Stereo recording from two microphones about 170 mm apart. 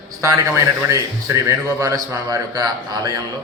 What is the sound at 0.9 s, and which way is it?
A man's voice, 20° right (ahead or behind).